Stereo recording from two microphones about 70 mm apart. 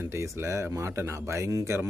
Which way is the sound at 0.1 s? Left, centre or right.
Right.